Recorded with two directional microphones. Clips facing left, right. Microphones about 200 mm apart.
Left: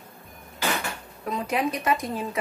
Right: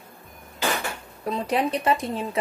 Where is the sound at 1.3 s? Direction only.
30° right (ahead or behind).